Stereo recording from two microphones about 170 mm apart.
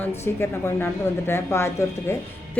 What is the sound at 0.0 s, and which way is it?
A woman's voice, 15° left (ahead or behind).